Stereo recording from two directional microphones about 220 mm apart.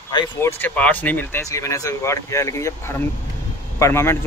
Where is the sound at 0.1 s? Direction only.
10° left (ahead or behind).